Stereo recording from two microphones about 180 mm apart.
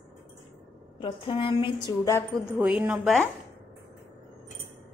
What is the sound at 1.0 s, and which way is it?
A woman's voice, 30° left (ahead or behind).